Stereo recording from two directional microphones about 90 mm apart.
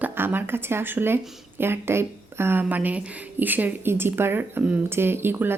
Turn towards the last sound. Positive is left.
turn(degrees=-25)  # may be behind; listen again after turning